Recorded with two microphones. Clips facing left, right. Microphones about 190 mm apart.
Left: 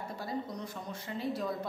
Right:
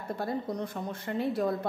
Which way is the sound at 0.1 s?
55° right (ahead or behind).